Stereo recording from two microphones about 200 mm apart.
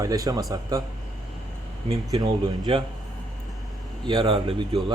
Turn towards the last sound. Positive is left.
turn(degrees=-25)  # may be behind; listen again after turning